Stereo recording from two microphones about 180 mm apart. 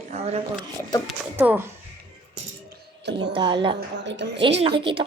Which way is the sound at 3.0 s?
70° right (ahead or behind).